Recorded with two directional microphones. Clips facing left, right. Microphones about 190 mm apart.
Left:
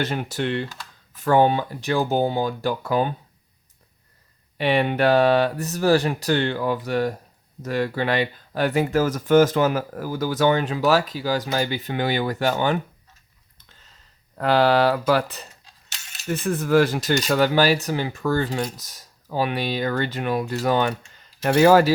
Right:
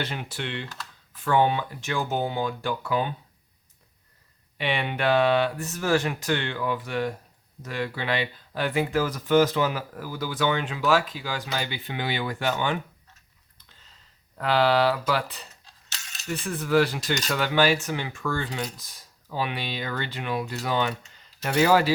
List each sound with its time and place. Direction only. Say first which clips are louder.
0.0 s speech: left 7 dB; 45° left (ahead or behind)
4.5 s speech: left 7 dB; 40° left (ahead or behind)
14.3 s speech: left 4 dB; 45° left (ahead or behind)